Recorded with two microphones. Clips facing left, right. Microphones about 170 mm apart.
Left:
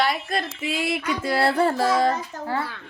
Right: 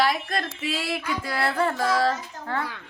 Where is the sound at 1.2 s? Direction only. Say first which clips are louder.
Left 5 dB; 30° left (ahead or behind).